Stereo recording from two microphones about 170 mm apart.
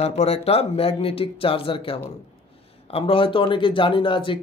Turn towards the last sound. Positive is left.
turn(degrees=30)  # may be behind; listen again after turning